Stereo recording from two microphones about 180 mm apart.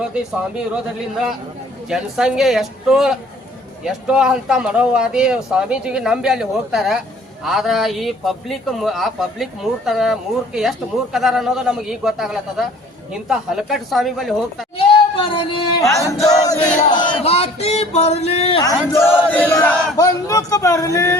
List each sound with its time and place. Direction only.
1.9 s a man's voice: 5° right (ahead or behind)
14.8 s singing: 30° left (ahead or behind)
15.8 s speech: 15° left (ahead or behind)
16.2 s battle cry: 20° left (ahead or behind)
16.9 s a sound: 25° left (ahead or behind)
18.9 s speech: 10° left (ahead or behind)